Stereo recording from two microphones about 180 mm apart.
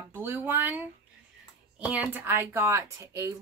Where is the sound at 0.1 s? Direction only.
10° right (ahead or behind).